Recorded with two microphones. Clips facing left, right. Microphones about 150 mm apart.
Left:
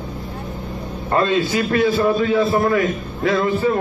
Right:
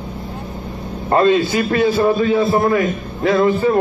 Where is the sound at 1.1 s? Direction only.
40° right (ahead or behind).